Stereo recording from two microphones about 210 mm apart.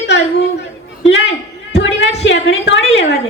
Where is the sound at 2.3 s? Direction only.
60° left (ahead or behind).